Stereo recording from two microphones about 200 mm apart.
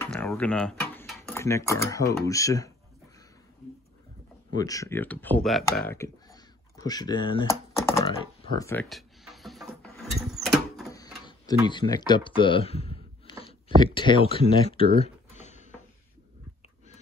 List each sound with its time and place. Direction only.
0.0 s speech: 5° left (ahead or behind)
4.6 s speech: 15° left (ahead or behind); by 5.7 s centre (ahead or behind)
5.9 s a sound: 15° left (ahead or behind)
8.1 s speech: 25° left (ahead or behind)
8.8 s music: centre (ahead or behind)
11.6 s speech: 20° left (ahead or behind)
15.0 s a sound: 35° left (ahead or behind)